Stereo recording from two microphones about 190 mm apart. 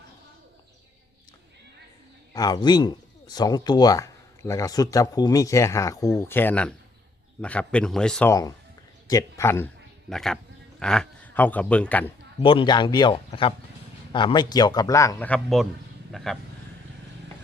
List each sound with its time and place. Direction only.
2.3 s a man's voice: 20° left (ahead or behind); by 8.3 s 5° left (ahead or behind)
8.3 s a man's voice: 20° left (ahead or behind)
10.1 s a man's voice: centre (ahead or behind)
12.4 s a man's voice: 25° left (ahead or behind); by 16.4 s centre (ahead or behind)